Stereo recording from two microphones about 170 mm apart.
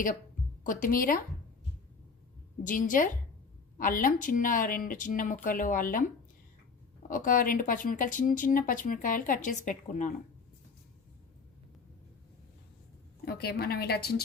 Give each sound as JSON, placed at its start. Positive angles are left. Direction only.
{"t": 0.7, "sound": "speech", "side_deg": 55}
{"t": 2.6, "sound": "speech", "side_deg": 50}
{"t": 7.1, "sound": "speech", "side_deg": 55}
{"t": 13.2, "sound": "a woman's voice", "side_deg": 65}